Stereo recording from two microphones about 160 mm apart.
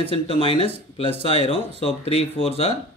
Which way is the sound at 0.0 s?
35° left (ahead or behind).